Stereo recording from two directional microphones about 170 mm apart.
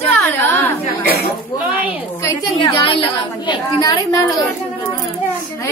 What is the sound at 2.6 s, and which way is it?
A woman's voice, 30° left (ahead or behind).